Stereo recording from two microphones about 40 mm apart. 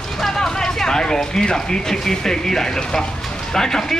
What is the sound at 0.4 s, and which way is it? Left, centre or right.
Speech, centre.